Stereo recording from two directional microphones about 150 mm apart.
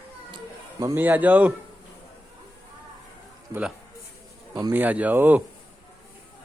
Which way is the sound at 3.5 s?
10° right (ahead or behind).